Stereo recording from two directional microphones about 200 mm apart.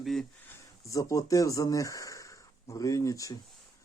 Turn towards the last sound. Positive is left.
turn(degrees=15)  # may be behind; listen again after turning